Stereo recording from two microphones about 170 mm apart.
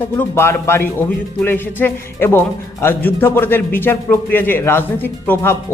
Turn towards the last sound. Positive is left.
turn(degrees=15)  # may be behind; listen again after turning